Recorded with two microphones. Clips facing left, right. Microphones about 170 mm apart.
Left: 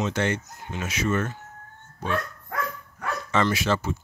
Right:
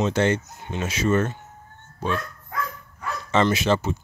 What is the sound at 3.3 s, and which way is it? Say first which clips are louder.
Speech: right 4 dB; 20° right (ahead or behind).